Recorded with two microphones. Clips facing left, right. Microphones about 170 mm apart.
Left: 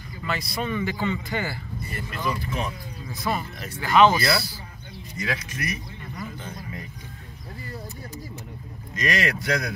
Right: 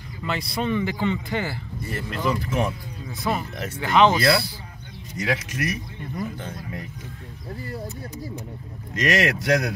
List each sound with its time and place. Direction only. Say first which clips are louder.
0.3 s speech: right 3 dB; 25° right (ahead or behind)
1.9 s speech: right 4 dB; 90° right
3.8 s speech: right 1 dB; 20° right (ahead or behind)
5.1 s speech: right 4 dB; 90° right
8.9 s speech: right 4 dB; 90° right